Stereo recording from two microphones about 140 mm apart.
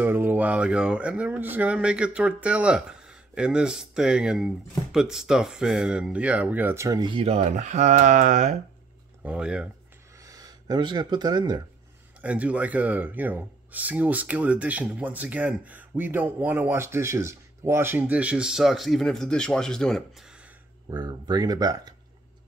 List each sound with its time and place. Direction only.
0.0 s speech: 15° right (ahead or behind)
7.0 s speech: 40° right (ahead or behind); by 8.5 s 60° right (ahead or behind)
9.2 s speech: 10° right (ahead or behind)
10.2 s speech: 25° right (ahead or behind)
12.2 s speech: 10° right (ahead or behind)
20.9 s speech: 30° right (ahead or behind)